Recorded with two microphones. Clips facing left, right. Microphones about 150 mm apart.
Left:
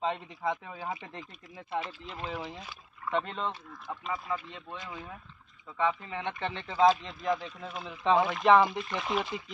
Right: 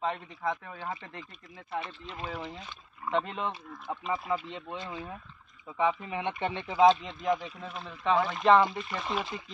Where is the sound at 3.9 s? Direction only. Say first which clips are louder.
Right 3 dB; 20° right (ahead or behind).